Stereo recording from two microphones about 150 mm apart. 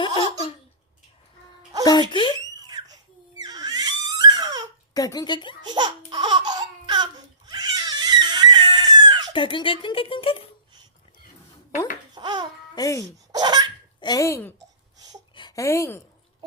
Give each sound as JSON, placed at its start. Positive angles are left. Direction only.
{"t": 0.2, "sound": "hiccup", "side_deg": 35}
{"t": 1.8, "sound": "speech", "side_deg": 30}
{"t": 2.6, "sound": "crying", "side_deg": -25}
{"t": 4.9, "sound": "a woman's voice", "side_deg": 25}
{"t": 5.6, "sound": "laughter", "side_deg": -30}
{"t": 9.3, "sound": "speech", "side_deg": 35}
{"t": 12.1, "sound": "babbling", "side_deg": -30}
{"t": 12.7, "sound": "a woman's voice", "side_deg": 20}
{"t": 13.3, "sound": "laughter", "side_deg": -30}
{"t": 14.0, "sound": "a woman's voice", "side_deg": 25}
{"t": 14.9, "sound": "a sound", "side_deg": -25}
{"t": 15.4, "sound": "a woman's voice", "side_deg": 25}